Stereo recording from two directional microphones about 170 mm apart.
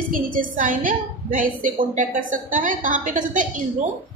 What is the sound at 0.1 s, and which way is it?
A woman's voice, 55° right (ahead or behind).